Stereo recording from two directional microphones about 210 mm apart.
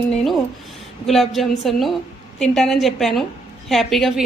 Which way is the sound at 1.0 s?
Centre (ahead or behind).